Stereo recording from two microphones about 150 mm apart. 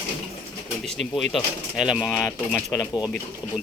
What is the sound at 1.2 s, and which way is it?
Speech, centre (ahead or behind).